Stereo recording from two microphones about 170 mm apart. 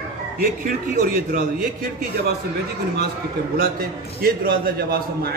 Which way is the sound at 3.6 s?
60° right (ahead or behind).